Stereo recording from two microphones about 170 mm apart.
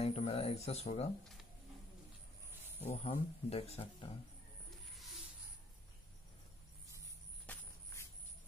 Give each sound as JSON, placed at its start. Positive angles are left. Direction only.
{"t": 0.0, "sound": "speech", "side_deg": 35}
{"t": 2.8, "sound": "speech", "side_deg": 35}
{"t": 7.4, "sound": "walk", "side_deg": 15}